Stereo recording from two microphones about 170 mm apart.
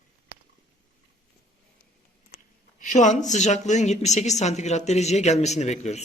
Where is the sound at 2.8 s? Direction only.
45° left (ahead or behind).